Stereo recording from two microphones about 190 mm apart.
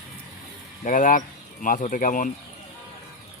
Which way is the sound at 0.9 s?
45° left (ahead or behind).